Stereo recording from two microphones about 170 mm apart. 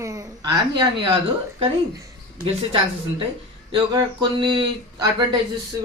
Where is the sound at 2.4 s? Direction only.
35° right (ahead or behind).